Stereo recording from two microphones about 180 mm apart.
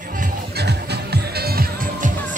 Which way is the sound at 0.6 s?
65° right (ahead or behind).